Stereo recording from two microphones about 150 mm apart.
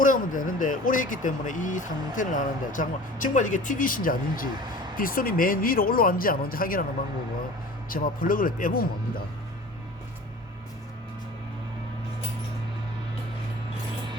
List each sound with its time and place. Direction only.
0.0 s speech: 60° left (ahead or behind)
7.9 s speech: 70° left (ahead or behind)